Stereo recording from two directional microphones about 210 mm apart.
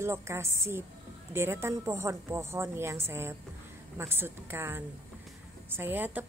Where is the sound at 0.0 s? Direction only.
10° right (ahead or behind).